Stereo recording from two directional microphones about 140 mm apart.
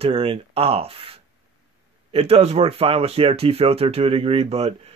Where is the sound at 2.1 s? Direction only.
45° right (ahead or behind).